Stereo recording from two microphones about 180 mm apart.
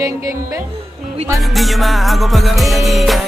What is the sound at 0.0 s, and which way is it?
Music, 15° right (ahead or behind).